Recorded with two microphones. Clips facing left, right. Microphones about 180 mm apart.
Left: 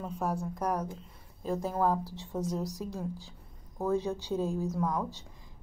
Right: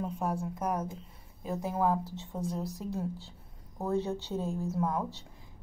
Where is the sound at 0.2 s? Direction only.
10° right (ahead or behind).